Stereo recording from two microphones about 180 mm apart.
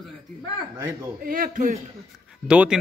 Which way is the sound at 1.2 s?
55° right (ahead or behind).